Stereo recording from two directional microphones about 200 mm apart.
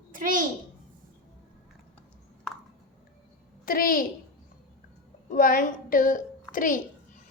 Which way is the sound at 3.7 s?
45° left (ahead or behind).